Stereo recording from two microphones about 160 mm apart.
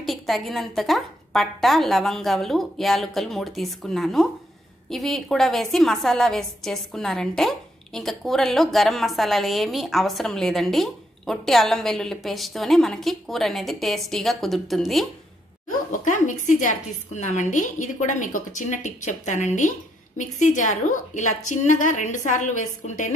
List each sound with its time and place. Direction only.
0.0 s a woman's voice: centre (ahead or behind)
15.9 s a woman's voice: 55° left (ahead or behind)